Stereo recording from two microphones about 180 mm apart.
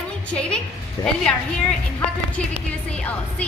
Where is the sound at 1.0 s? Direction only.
20° left (ahead or behind).